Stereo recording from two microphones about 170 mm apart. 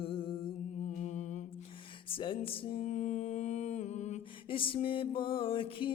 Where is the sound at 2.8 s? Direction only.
45° left (ahead or behind).